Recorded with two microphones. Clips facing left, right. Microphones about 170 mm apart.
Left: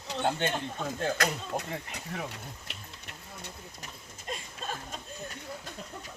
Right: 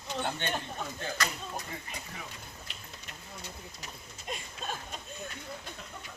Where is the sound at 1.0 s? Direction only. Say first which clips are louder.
Left 7 dB; 65° left (ahead or behind).